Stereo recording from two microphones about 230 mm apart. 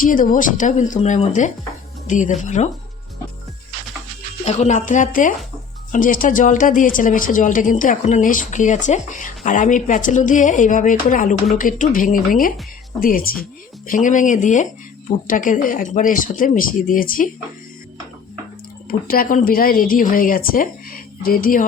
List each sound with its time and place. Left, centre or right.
0.0 s speech: left
4.4 s speech: left
18.9 s speech: left